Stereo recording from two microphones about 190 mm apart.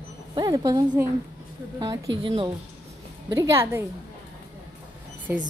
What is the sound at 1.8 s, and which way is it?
Speech, 20° right (ahead or behind).